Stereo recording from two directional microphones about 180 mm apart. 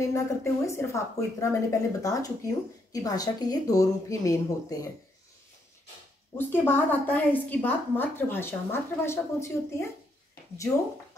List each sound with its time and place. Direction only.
0.0 s a woman's voice: 15° left (ahead or behind)
6.3 s a woman's voice: 10° left (ahead or behind)